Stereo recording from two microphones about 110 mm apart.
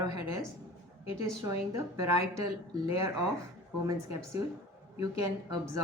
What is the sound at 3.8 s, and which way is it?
Speech, 25° right (ahead or behind).